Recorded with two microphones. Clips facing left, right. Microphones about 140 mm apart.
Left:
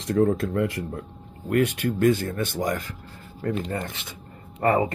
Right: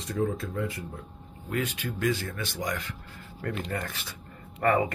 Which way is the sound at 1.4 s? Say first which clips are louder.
Left 9 dB; 55° left (ahead or behind).